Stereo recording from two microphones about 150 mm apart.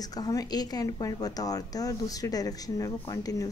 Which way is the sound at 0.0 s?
25° left (ahead or behind).